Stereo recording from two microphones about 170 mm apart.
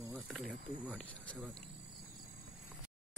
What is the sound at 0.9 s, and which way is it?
Speech, 10° left (ahead or behind).